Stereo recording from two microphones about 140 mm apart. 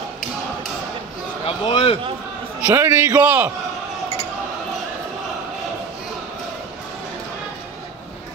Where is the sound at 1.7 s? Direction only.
40° left (ahead or behind).